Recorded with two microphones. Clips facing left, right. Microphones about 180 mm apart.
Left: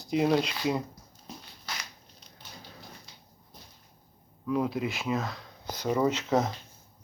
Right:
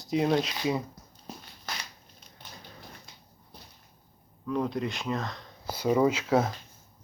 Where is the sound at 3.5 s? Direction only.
65° right (ahead or behind).